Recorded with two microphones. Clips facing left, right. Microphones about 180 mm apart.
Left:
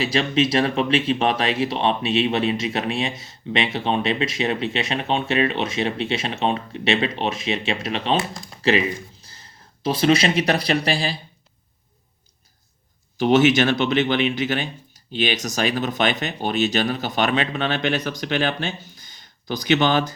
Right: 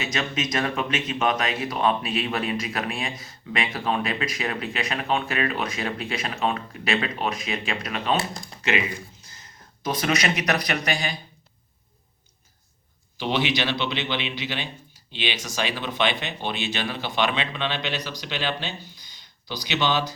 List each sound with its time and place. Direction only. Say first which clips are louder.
0.0 s speech: left 8 dB; 30° left (ahead or behind)
13.1 s speech: left 9 dB; 45° left (ahead or behind)